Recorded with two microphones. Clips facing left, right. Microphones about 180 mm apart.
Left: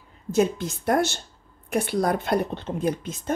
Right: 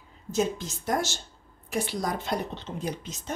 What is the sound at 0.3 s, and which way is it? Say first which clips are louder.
A woman's voice: left 5 dB; 60° left (ahead or behind).